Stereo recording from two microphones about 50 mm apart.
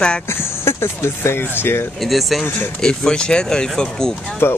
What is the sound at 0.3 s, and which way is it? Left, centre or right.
Speech, left.